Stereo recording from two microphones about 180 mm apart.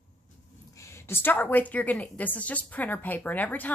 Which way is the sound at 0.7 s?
15° left (ahead or behind).